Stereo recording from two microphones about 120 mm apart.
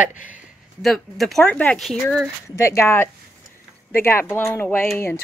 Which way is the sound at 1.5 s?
10° left (ahead or behind).